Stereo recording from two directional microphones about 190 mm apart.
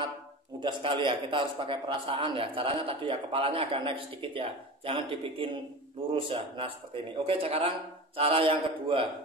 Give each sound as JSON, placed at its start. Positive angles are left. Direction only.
{"t": 0.6, "sound": "a man's voice", "side_deg": -25}